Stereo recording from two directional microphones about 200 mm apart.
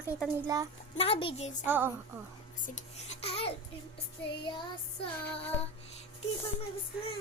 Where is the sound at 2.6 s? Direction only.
35° left (ahead or behind).